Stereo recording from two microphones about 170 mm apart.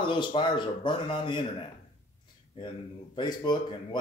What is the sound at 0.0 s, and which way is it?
Speech, 30° left (ahead or behind).